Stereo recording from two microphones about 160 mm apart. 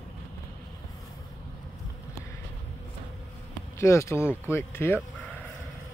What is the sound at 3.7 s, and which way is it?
Speech, 20° left (ahead or behind).